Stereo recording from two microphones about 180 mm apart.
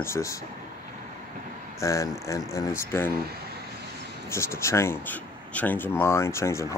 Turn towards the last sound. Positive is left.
turn(degrees=15)  # may be behind; listen again after turning